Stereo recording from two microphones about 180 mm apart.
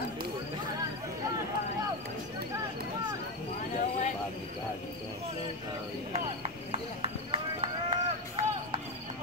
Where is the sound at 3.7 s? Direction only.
40° left (ahead or behind).